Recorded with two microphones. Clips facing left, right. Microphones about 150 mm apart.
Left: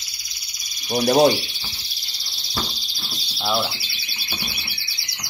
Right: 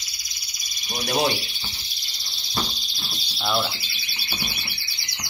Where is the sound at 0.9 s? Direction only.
40° left (ahead or behind).